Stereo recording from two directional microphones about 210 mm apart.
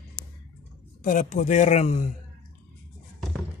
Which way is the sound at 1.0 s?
40° left (ahead or behind).